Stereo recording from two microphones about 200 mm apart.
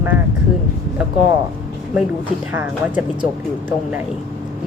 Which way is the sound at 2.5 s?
10° right (ahead or behind).